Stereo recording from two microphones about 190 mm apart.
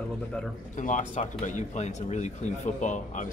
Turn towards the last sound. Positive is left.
turn(degrees=40)  # may be behind; listen again after turning